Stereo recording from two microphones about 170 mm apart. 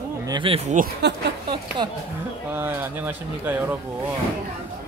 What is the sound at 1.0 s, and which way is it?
Speech, 85° right.